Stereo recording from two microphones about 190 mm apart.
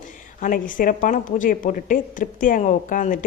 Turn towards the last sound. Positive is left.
turn(degrees=45)  # may be behind; listen again after turning